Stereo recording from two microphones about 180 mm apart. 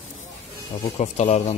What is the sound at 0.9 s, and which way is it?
Speech, 40° left (ahead or behind).